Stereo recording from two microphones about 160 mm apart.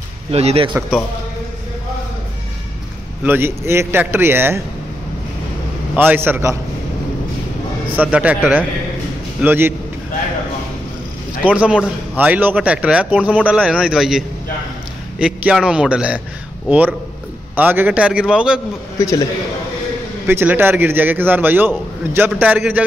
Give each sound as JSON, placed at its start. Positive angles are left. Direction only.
{"t": 0.3, "sound": "speech", "side_deg": -40}
{"t": 3.3, "sound": "a man's voice", "side_deg": -15}
{"t": 5.9, "sound": "a man's voice", "side_deg": -15}
{"t": 7.9, "sound": "a man's voice", "side_deg": -10}
{"t": 11.4, "sound": "a man's voice", "side_deg": -5}
{"t": 20.2, "sound": "a man's voice", "side_deg": -15}